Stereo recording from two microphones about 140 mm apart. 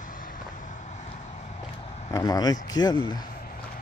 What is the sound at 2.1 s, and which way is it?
Speech, 25° left (ahead or behind).